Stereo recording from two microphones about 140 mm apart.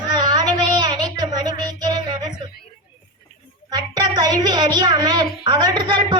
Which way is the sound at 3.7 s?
30° right (ahead or behind).